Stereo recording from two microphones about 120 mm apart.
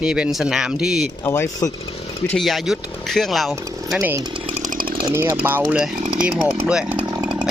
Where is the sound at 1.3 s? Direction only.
25° left (ahead or behind).